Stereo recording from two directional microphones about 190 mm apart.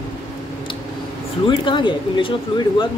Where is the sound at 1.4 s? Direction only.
25° left (ahead or behind).